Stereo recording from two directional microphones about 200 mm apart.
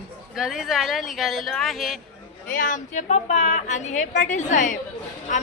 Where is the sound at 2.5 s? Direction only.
40° left (ahead or behind).